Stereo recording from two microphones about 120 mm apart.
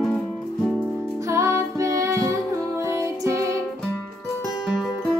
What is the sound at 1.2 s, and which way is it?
Music, 25° right (ahead or behind).